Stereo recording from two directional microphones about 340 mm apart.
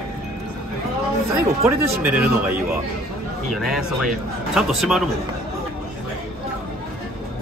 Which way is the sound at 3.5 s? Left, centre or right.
Centre.